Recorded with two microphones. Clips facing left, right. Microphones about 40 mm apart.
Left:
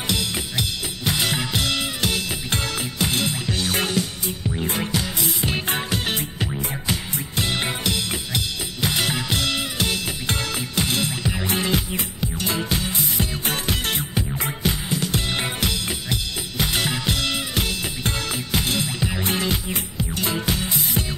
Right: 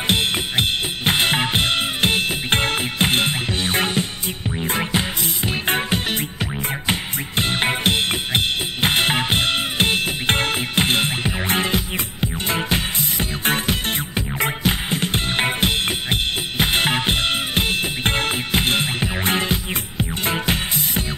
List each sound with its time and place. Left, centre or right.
0.0 s drum kit: right
4.6 s music: right
6.4 s music: right
14.7 s drum kit: right
19.7 s music: right